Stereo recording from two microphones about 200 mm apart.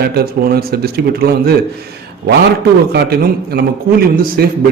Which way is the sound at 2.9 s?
50° right (ahead or behind).